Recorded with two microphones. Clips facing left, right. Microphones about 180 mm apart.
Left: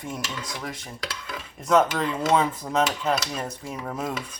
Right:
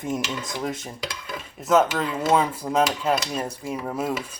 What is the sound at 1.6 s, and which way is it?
Speech, centre (ahead or behind).